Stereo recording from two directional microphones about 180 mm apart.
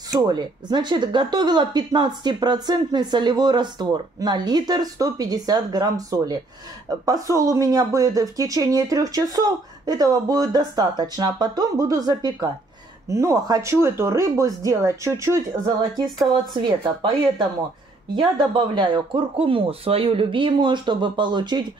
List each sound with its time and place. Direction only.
0.1 s speech: 25° right (ahead or behind)